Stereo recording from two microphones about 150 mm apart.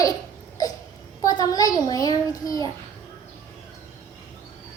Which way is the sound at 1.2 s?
25° left (ahead or behind).